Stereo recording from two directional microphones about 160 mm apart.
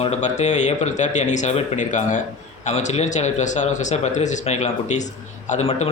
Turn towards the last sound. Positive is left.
turn(degrees=45)  # may be behind; listen again after turning